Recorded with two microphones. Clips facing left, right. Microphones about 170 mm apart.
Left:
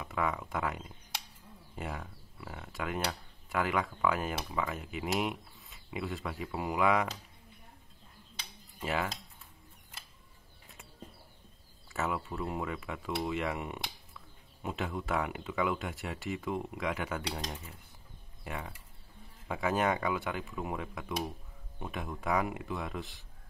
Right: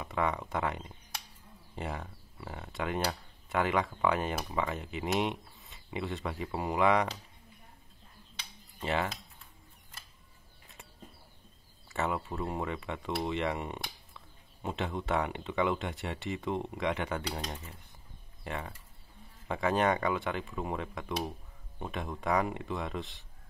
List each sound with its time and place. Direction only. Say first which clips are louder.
0.0 s speech: right 2 dB; centre (ahead or behind)
8.7 s speech: right 2 dB; 5° left (ahead or behind)
11.9 s speech: right 1 dB; centre (ahead or behind)
14.1 s a sound: left 1 dB; 30° right (ahead or behind)
15.0 s speech: right 3 dB; centre (ahead or behind)
18.4 s speech: right 2 dB; 5° left (ahead or behind)